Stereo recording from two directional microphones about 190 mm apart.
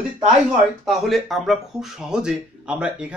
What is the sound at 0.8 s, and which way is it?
A man's voice, centre (ahead or behind).